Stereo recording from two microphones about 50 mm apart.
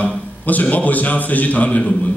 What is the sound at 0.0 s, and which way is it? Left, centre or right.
A man's voice, left.